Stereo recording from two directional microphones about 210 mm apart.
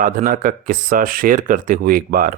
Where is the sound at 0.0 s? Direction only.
40° right (ahead or behind).